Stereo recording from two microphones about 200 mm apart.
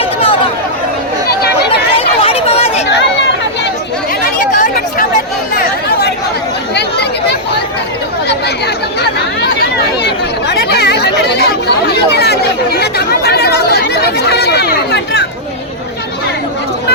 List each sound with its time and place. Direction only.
0.0 s a sound: 30° left (ahead or behind)
2.0 s chatter: 30° left (ahead or behind)
2.9 s chatter: 60° left (ahead or behind)
4.4 s chatter: 40° left (ahead or behind)
5.5 s chatter: 50° left (ahead or behind)